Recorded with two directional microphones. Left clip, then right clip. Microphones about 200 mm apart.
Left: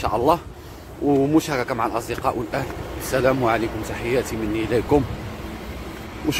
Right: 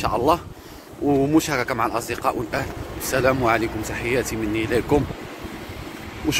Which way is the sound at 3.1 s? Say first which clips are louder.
Even; 10° right (ahead or behind).